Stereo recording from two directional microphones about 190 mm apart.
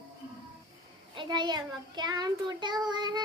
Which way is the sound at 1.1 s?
25° right (ahead or behind).